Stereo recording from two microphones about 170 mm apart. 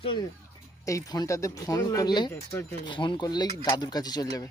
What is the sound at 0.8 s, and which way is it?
Speech, 20° left (ahead or behind).